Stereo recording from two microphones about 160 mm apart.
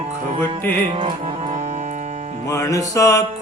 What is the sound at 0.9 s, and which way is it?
Music, 35° right (ahead or behind).